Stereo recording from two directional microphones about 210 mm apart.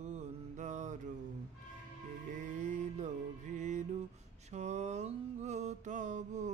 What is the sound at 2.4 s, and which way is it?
Mantra, 35° right (ahead or behind).